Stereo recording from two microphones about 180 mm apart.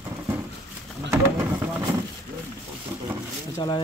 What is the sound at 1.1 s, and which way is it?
Speech, 15° right (ahead or behind).